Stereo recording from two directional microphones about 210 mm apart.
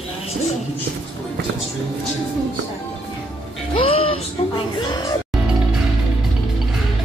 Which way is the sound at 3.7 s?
25° left (ahead or behind).